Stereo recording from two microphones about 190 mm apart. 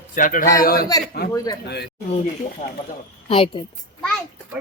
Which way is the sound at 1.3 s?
15° left (ahead or behind).